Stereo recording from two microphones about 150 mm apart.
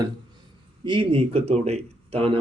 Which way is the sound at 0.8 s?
35° right (ahead or behind).